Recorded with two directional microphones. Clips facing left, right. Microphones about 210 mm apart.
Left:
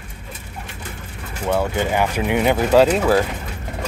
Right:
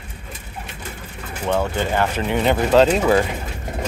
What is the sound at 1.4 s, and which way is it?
Speech, 10° left (ahead or behind).